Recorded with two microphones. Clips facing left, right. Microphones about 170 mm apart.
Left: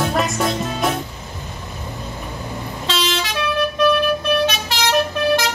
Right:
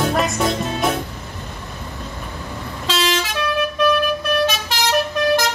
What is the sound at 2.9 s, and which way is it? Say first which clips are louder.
Vehicle: right 2 dB; centre (ahead or behind).